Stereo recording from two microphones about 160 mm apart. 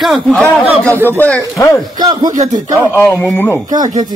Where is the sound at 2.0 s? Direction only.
25° right (ahead or behind).